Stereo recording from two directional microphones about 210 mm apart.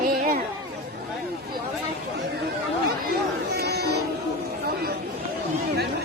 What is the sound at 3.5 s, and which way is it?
Music, 50° right (ahead or behind).